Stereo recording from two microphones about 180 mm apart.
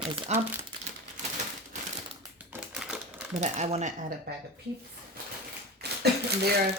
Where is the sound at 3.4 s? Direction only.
40° right (ahead or behind).